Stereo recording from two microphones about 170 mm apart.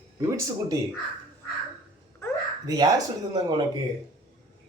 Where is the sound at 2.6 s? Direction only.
20° right (ahead or behind).